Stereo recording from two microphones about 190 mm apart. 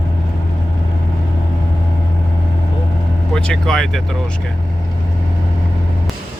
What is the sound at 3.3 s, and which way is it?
Speech, 5° left (ahead or behind).